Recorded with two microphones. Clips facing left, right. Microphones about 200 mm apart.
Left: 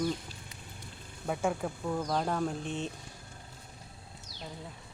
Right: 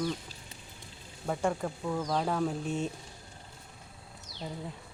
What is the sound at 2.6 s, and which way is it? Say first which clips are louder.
Speech: right 3 dB; 45° right (ahead or behind).